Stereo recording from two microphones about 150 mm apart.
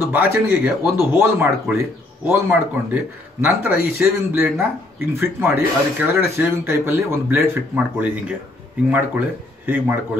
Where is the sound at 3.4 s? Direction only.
10° right (ahead or behind).